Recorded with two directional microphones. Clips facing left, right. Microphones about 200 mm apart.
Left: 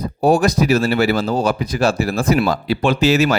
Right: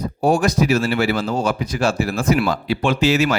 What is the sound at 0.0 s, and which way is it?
Speech, 35° left (ahead or behind).